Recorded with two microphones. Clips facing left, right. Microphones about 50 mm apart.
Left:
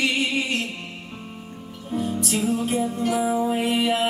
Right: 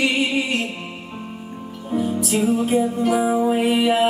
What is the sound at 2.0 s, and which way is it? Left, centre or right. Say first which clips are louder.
Music: right 4 dB; centre.